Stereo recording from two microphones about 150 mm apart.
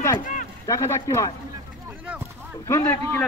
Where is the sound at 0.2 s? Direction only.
60° left (ahead or behind).